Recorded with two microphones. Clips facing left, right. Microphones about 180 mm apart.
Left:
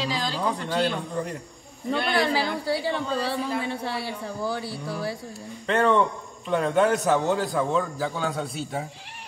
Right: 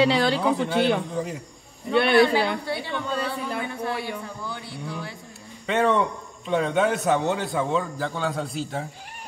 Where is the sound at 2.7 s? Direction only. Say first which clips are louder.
Left 3 dB; 35° left (ahead or behind).